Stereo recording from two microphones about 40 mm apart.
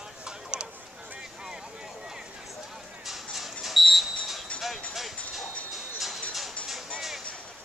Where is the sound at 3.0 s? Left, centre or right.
Centre.